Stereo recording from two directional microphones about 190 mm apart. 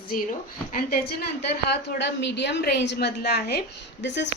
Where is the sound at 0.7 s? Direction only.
55° left (ahead or behind).